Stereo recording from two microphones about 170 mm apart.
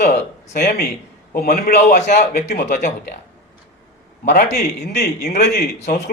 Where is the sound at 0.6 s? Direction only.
65° left (ahead or behind).